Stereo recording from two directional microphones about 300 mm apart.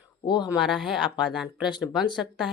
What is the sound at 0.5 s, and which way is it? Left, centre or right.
Speech, centre.